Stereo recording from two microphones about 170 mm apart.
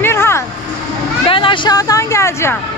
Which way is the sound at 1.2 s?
30° left (ahead or behind).